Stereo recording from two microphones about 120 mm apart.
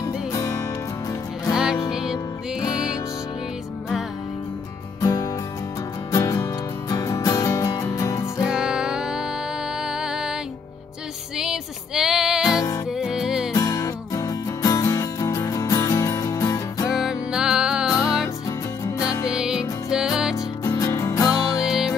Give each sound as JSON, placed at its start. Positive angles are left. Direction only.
{"t": 0.0, "sound": "music", "side_deg": 25}
{"t": 1.5, "sound": "music", "side_deg": -5}
{"t": 5.0, "sound": "music", "side_deg": 30}
{"t": 8.5, "sound": "music", "side_deg": -5}
{"t": 11.3, "sound": "music", "side_deg": -5}
{"t": 12.4, "sound": "music", "side_deg": 30}
{"t": 12.9, "sound": "music", "side_deg": -5}
{"t": 13.5, "sound": "music", "side_deg": 30}
{"t": 16.8, "sound": "music", "side_deg": -5}
{"t": 19.4, "sound": "music", "side_deg": -5}
{"t": 20.3, "sound": "music", "side_deg": 30}
{"t": 21.6, "sound": "music", "side_deg": -5}